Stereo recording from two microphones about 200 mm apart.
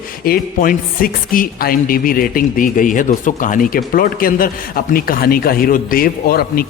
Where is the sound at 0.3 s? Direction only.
45° left (ahead or behind).